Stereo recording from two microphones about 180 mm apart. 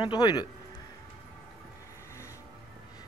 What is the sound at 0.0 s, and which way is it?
Speech, 25° left (ahead or behind).